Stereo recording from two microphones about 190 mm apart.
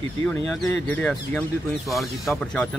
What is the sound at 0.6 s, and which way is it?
Speech, 5° left (ahead or behind).